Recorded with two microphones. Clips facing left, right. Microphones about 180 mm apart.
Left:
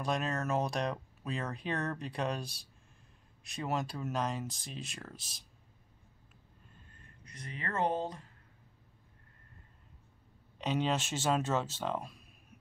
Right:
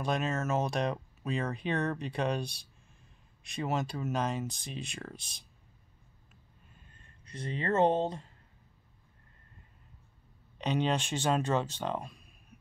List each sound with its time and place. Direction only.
0.0 s speech: centre (ahead or behind)
6.9 s speech: 30° right (ahead or behind)
10.6 s speech: 5° left (ahead or behind)